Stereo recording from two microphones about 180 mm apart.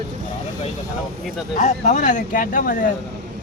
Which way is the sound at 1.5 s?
45° left (ahead or behind).